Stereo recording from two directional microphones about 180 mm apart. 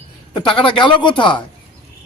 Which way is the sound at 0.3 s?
30° left (ahead or behind).